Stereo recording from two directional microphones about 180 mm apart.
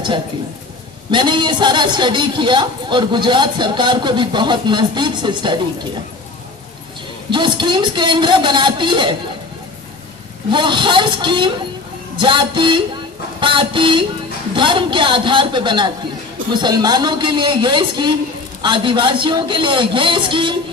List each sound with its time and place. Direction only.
1.1 s a man's voice: 25° right (ahead or behind)
7.2 s a man's voice: 25° right (ahead or behind)
10.5 s a man's voice: 25° right (ahead or behind)